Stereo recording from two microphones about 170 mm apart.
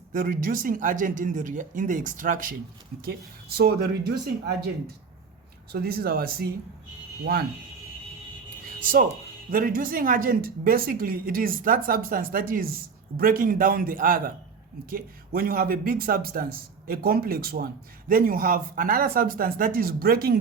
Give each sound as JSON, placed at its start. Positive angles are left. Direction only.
{"t": 0.1, "sound": "speech", "side_deg": -55}
{"t": 3.0, "sound": "speech", "side_deg": -65}
{"t": 5.7, "sound": "speech", "side_deg": -65}
{"t": 9.5, "sound": "speech", "side_deg": -55}